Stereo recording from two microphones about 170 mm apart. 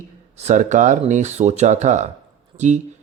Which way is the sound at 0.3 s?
45° right (ahead or behind).